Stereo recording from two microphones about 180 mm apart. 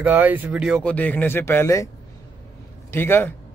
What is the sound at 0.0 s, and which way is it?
Speech, 10° right (ahead or behind).